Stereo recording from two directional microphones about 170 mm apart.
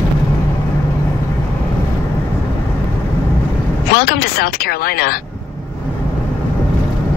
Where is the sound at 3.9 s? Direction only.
60° left (ahead or behind).